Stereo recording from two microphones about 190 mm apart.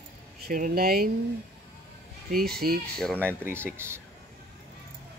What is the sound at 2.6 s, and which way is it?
Speech, 50° right (ahead or behind).